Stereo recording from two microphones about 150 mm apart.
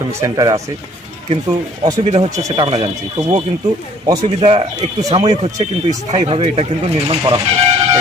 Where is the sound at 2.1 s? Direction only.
45° right (ahead or behind).